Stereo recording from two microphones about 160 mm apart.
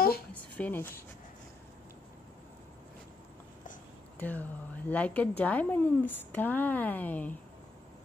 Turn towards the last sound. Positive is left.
turn(degrees=10)  # may be behind; listen again after turning